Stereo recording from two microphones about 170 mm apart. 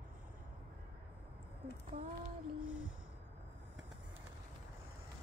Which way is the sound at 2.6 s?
5° right (ahead or behind).